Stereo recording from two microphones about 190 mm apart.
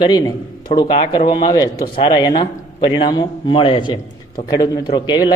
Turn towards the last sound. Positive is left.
turn(degrees=20)  # may be behind; listen again after turning